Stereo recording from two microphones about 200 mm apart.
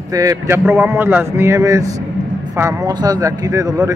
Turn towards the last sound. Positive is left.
turn(degrees=-15)  # may be behind; listen again after turning